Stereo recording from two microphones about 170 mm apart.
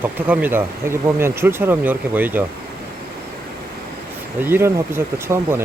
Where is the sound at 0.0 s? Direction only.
10° right (ahead or behind).